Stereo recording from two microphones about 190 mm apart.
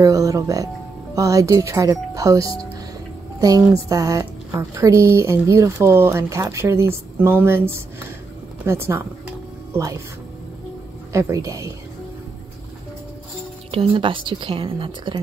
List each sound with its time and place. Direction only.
0.0 s a woman's voice: 15° right (ahead or behind)
11.1 s a woman's voice: 15° right (ahead or behind)
13.7 s a woman's voice: 30° right (ahead or behind)